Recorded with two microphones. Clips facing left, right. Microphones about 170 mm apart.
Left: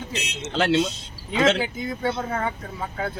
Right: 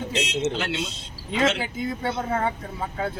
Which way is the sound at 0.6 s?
65° left (ahead or behind).